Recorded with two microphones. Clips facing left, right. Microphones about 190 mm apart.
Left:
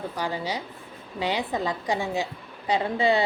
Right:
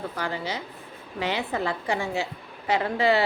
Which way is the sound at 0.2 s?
15° left (ahead or behind).